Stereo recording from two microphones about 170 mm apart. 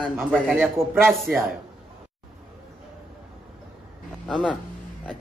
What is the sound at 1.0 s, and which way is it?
Speech, centre (ahead or behind).